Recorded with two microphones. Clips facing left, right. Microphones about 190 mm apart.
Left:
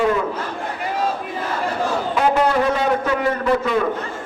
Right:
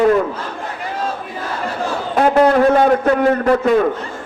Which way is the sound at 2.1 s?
50° right (ahead or behind).